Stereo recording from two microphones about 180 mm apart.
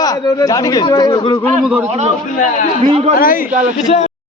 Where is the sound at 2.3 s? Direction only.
45° left (ahead or behind).